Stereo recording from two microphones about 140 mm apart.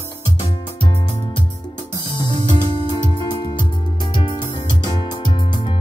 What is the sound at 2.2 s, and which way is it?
Music, 30° left (ahead or behind).